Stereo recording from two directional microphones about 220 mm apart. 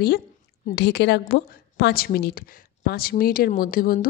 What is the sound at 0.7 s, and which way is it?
A woman's voice, 50° left (ahead or behind).